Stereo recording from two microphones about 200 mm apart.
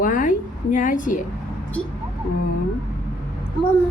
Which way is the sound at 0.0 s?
40° left (ahead or behind).